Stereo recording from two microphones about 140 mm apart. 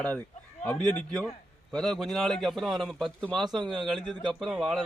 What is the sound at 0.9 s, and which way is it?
A man's voice, 5° left (ahead or behind).